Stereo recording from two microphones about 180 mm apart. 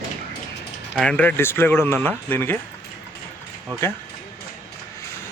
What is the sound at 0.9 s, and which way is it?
Speech, 5° left (ahead or behind).